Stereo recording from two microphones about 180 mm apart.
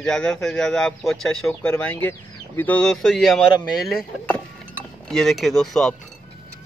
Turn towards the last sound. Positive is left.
turn(degrees=0)  # may be behind; listen again after turning